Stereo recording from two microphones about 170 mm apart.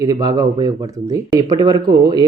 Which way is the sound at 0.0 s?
20° right (ahead or behind).